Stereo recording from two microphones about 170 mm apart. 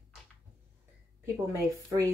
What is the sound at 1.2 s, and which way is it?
Speech, 20° right (ahead or behind).